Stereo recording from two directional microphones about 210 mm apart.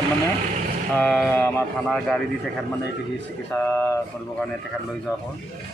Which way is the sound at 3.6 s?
10° left (ahead or behind).